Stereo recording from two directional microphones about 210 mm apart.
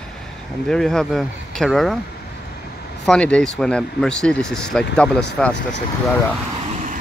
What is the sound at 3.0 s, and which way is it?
Speech, 5° left (ahead or behind).